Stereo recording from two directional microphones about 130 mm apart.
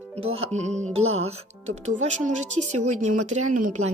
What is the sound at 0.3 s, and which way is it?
Speech, 55° right (ahead or behind).